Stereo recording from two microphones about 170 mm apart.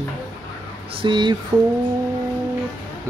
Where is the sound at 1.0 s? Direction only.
25° right (ahead or behind).